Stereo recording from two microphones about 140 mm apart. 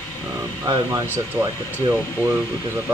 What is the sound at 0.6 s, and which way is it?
Speech, 15° right (ahead or behind).